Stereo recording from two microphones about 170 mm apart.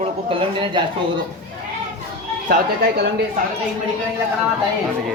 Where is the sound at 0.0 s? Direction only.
30° right (ahead or behind).